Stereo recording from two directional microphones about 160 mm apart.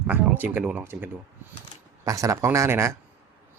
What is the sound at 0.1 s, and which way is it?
Speech, 10° right (ahead or behind).